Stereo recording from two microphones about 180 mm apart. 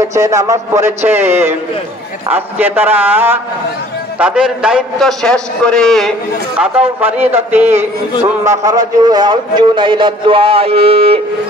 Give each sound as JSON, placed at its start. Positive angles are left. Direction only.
{"t": 0.0, "sound": "a man's voice", "side_deg": -15}